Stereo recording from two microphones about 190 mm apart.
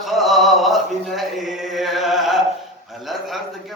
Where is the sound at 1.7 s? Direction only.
Centre (ahead or behind).